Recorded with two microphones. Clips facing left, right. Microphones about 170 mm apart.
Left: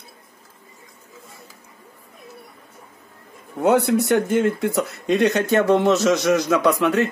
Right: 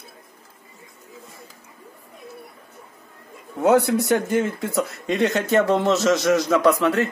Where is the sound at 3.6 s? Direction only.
Centre (ahead or behind).